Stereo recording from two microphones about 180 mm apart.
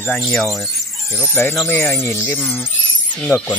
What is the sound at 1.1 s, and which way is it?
Speech, 15° left (ahead or behind).